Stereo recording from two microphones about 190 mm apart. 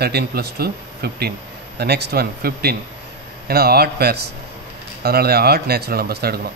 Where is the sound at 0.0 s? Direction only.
55° right (ahead or behind).